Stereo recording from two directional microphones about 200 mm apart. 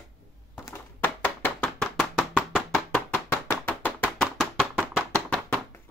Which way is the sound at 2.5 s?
5° left (ahead or behind).